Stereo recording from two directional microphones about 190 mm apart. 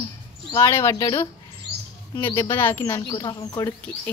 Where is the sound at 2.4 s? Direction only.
10° left (ahead or behind).